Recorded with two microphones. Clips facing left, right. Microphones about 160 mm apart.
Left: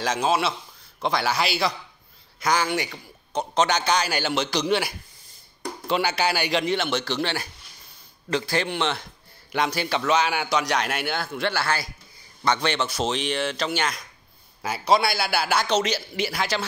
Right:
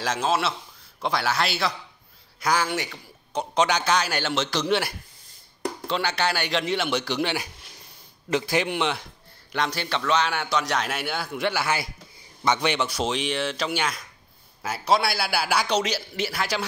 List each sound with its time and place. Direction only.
0.0 s a man's voice: centre (ahead or behind)
6.6 s a man's voice: 5° right (ahead or behind)
9.5 s a man's voice: 5° left (ahead or behind)
11.2 s a man's voice: 15° right (ahead or behind)